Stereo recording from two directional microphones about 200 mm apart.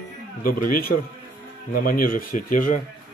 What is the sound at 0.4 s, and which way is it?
A man's voice, 45° left (ahead or behind).